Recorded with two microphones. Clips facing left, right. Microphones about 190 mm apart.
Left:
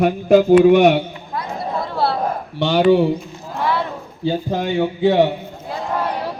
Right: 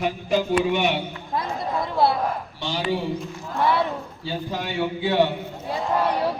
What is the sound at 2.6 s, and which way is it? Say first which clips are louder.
Speech: left 13 dB; 65° left (ahead or behind).